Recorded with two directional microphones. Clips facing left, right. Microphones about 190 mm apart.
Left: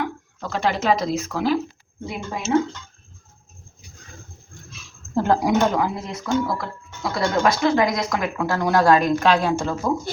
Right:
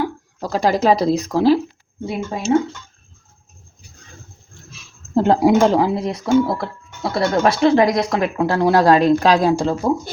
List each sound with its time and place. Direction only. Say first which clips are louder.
0.3 s a woman's voice: right 6 dB; 35° right (ahead or behind)
5.1 s a woman's voice: right 5 dB; 25° right (ahead or behind)